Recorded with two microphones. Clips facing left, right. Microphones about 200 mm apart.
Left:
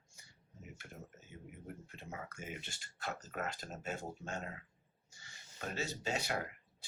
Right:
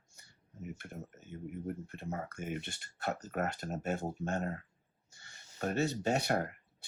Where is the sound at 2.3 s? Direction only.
55° right (ahead or behind).